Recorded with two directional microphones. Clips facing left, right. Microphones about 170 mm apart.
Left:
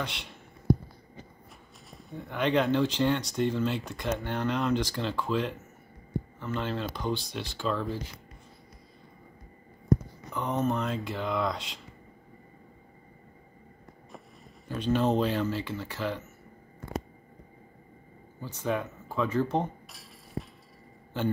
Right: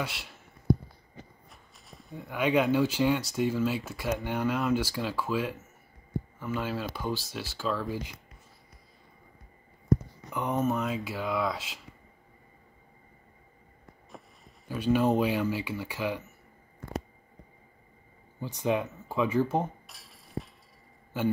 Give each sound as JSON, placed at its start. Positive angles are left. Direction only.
{"t": 0.0, "sound": "speech", "side_deg": -5}
{"t": 1.9, "sound": "speech", "side_deg": 0}
{"t": 10.3, "sound": "speech", "side_deg": -10}
{"t": 14.7, "sound": "speech", "side_deg": -10}
{"t": 18.4, "sound": "speech", "side_deg": -15}
{"t": 19.1, "sound": "a sound", "side_deg": -10}
{"t": 21.1, "sound": "speech", "side_deg": -10}